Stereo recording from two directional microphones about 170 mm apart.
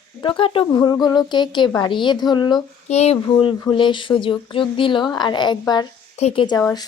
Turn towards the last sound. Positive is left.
turn(degrees=25)  # may be behind; listen again after turning